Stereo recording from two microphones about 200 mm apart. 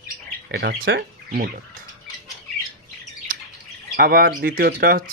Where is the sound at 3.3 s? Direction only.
45° right (ahead or behind).